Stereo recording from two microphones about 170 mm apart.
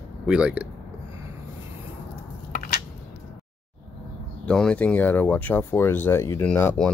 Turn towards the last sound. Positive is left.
turn(degrees=10)  # may be behind; listen again after turning